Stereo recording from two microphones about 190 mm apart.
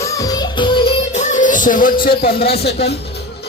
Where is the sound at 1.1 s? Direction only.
40° left (ahead or behind); by 2.9 s 60° left (ahead or behind).